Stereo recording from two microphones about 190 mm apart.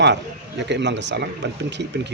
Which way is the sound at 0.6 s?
65° right (ahead or behind).